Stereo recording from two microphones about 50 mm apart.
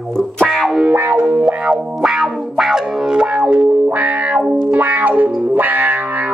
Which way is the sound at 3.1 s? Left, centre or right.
Centre.